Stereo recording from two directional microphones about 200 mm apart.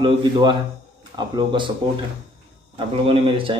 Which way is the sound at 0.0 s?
25° right (ahead or behind).